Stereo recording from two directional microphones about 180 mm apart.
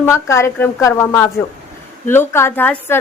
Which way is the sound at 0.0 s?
15° left (ahead or behind).